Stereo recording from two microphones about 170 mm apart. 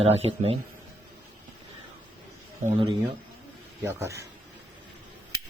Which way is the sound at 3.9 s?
15° right (ahead or behind).